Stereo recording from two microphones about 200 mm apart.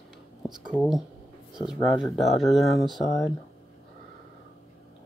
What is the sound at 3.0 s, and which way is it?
Speech, 15° left (ahead or behind).